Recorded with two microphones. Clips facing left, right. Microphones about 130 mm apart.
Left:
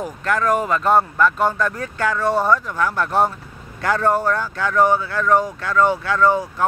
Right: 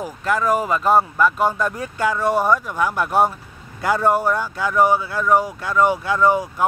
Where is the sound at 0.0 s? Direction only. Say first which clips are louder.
Even; 5° right (ahead or behind).